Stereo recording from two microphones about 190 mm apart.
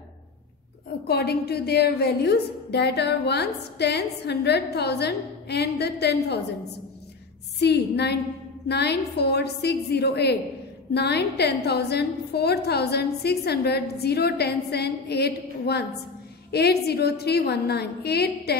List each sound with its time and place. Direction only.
1.0 s a woman's voice: 55° left (ahead or behind)
7.6 s a woman's voice: 60° left (ahead or behind)